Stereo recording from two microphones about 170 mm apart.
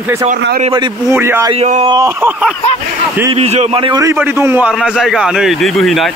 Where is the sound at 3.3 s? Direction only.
40° right (ahead or behind).